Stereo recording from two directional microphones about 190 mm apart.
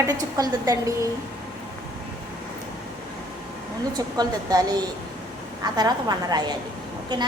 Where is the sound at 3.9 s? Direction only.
20° right (ahead or behind).